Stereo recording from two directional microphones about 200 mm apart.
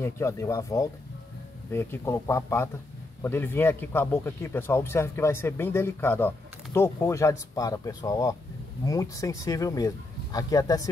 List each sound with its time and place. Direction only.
0.0 s a man's voice: 15° left (ahead or behind)